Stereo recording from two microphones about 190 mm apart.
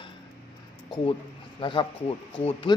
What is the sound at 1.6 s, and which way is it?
A man's voice, 25° left (ahead or behind).